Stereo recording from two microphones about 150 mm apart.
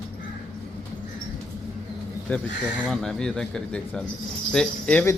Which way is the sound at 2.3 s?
10° left (ahead or behind).